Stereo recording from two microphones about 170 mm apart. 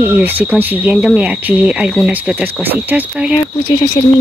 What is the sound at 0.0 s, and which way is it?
Speech, 10° right (ahead or behind).